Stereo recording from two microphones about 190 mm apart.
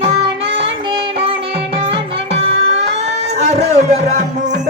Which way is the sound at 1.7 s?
30° right (ahead or behind).